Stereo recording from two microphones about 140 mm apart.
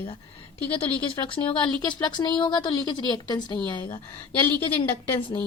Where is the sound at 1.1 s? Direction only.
40° left (ahead or behind).